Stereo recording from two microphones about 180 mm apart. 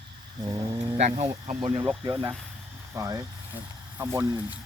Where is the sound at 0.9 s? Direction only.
40° right (ahead or behind).